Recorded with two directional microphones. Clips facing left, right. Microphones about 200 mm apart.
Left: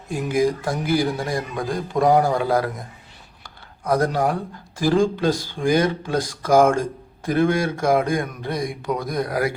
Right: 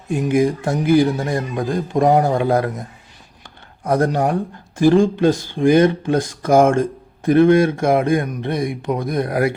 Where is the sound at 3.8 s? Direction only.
25° right (ahead or behind).